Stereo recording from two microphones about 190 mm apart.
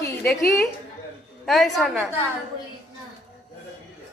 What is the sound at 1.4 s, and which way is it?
Speech, centre (ahead or behind).